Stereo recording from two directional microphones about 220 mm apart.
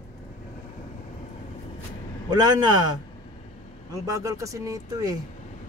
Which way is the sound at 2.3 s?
20° right (ahead or behind).